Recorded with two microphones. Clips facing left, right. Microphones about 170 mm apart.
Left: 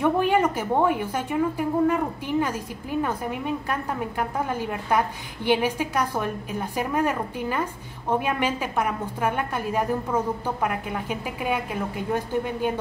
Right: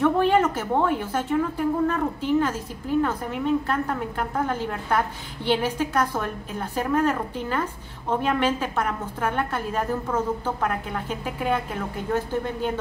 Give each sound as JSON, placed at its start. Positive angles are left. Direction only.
{"t": 0.0, "sound": "a woman's voice", "side_deg": 10}